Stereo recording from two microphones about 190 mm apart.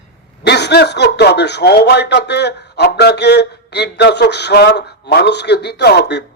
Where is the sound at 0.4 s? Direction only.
60° left (ahead or behind).